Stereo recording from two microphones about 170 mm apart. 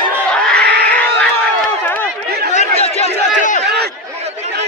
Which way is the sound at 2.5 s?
40° left (ahead or behind).